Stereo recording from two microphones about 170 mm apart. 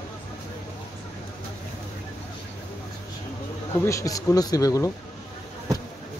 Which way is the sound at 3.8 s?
20° left (ahead or behind).